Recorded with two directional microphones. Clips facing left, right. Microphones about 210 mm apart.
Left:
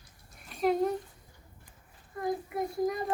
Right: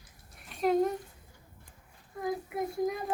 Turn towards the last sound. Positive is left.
turn(degrees=0)  # may be behind; listen again after turning